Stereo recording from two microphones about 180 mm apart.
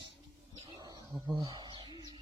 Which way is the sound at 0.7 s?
25° right (ahead or behind).